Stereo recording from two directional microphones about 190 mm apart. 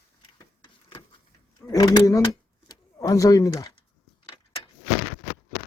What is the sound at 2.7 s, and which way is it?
Speech, 20° left (ahead or behind).